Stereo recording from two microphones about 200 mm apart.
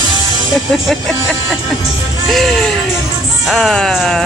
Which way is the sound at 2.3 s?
Centre (ahead or behind).